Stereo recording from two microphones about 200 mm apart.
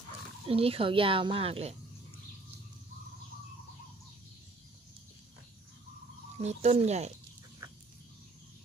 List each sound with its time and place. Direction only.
0.5 s speech: 30° right (ahead or behind)
6.4 s speech: 35° right (ahead or behind)